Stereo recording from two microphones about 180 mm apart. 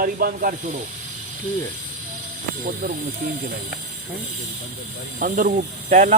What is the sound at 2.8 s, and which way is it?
Speech, 60° right (ahead or behind).